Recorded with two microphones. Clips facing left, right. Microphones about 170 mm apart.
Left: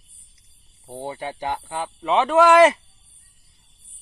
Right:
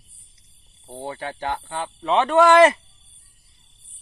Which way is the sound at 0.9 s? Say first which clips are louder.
Left 1 dB; 15° left (ahead or behind).